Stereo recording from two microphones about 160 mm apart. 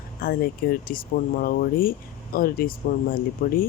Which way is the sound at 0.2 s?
70° left (ahead or behind).